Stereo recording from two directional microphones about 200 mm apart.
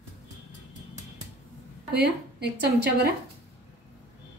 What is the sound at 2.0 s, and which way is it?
A woman's voice, 55° right (ahead or behind).